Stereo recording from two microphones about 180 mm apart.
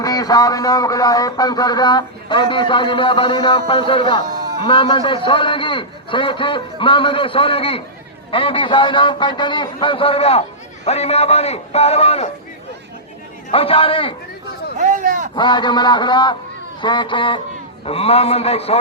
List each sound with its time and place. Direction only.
0.0 s a man's voice: 20° left (ahead or behind)
13.5 s a man's voice: 30° left (ahead or behind)
14.8 s speech: 45° right (ahead or behind)
15.4 s a man's voice: 25° left (ahead or behind)